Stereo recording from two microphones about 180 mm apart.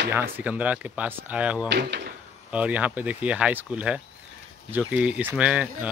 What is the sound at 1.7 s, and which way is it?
Speech, 70° right (ahead or behind).